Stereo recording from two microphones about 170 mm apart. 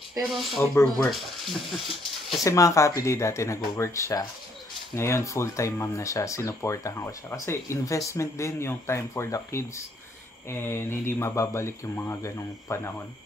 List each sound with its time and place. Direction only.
0.3 s speech: centre (ahead or behind)
2.4 s speech: 20° left (ahead or behind)